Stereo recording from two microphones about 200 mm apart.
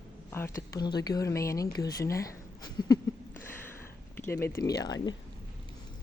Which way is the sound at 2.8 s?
15° left (ahead or behind).